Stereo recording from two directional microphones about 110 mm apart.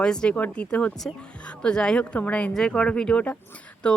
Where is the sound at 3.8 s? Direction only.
10° left (ahead or behind).